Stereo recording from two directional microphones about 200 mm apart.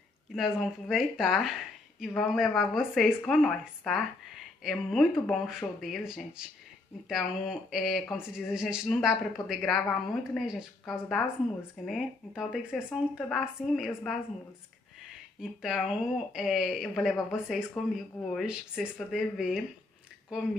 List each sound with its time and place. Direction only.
0.4 s speech: centre (ahead or behind)
5.1 s speech: 5° left (ahead or behind)
15.6 s speech: 5° right (ahead or behind)